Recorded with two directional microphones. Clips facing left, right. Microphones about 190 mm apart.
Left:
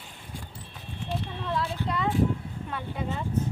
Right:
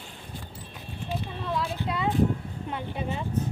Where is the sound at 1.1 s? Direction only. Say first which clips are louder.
Even; centre (ahead or behind).